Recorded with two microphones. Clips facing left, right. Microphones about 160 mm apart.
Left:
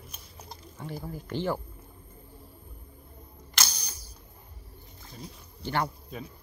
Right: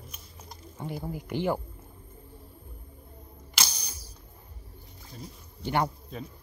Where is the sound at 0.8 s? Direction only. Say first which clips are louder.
Right 3 dB; 15° right (ahead or behind).